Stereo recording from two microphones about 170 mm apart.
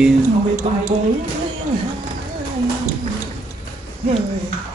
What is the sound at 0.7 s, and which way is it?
Speech, 35° right (ahead or behind).